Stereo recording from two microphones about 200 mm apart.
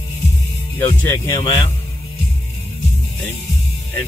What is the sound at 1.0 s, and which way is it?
Speech, 15° left (ahead or behind).